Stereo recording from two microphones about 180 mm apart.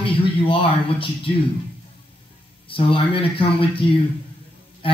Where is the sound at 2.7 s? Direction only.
30° left (ahead or behind).